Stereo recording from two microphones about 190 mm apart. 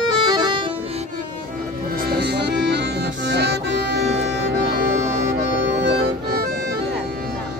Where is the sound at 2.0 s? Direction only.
60° right (ahead or behind).